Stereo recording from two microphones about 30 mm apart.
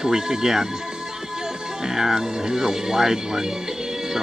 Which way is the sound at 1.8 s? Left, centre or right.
Centre.